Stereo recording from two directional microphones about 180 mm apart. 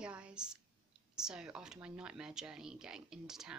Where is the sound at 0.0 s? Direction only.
5° right (ahead or behind).